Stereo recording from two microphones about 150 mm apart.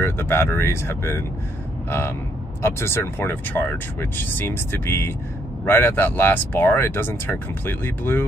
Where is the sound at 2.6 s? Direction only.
15° left (ahead or behind).